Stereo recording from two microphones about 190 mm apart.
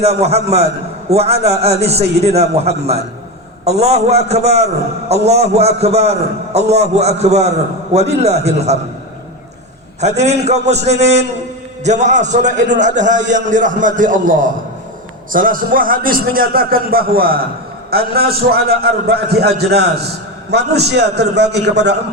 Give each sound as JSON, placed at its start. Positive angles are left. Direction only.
{"t": 0.0, "sound": "a man's voice", "side_deg": -35}
{"t": 10.0, "sound": "a man's voice", "side_deg": -35}